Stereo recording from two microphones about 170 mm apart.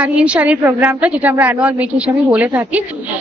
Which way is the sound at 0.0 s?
5° right (ahead or behind).